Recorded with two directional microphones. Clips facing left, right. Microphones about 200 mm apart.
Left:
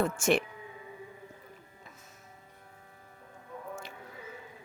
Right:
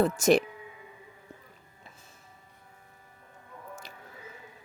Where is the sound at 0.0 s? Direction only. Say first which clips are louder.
Right 5 dB; 40° right (ahead or behind).